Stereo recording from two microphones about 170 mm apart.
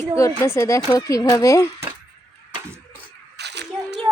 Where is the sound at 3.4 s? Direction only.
85° right.